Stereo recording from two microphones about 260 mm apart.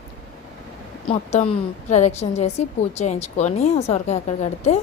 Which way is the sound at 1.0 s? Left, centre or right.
Left.